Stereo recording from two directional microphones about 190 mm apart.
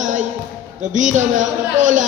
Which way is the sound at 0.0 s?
40° right (ahead or behind).